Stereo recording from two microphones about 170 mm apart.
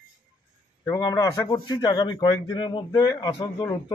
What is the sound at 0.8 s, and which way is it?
A man's voice, 20° left (ahead or behind).